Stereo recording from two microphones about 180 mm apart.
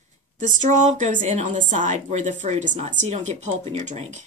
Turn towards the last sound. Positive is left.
turn(degrees=-40)  # may be behind; listen again after turning